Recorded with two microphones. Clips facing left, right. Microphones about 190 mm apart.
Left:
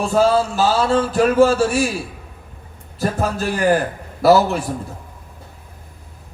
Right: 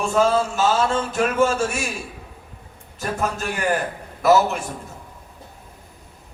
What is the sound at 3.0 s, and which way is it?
A man's voice, 35° left (ahead or behind).